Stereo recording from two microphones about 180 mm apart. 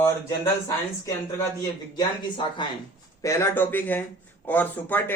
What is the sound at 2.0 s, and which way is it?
Speech, 25° left (ahead or behind).